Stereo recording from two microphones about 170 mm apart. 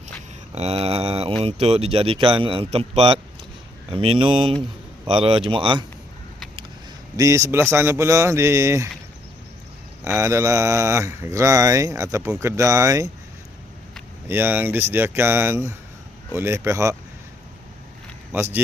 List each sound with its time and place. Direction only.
0.5 s mantra: 40° right (ahead or behind)
1.4 s a man's voice: 35° right (ahead or behind)
7.2 s speech: 20° right (ahead or behind)
10.0 s speech: 15° right (ahead or behind)
14.3 s speech: 10° right (ahead or behind)